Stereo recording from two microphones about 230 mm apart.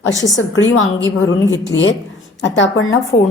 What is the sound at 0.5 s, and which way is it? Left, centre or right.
Speech, left.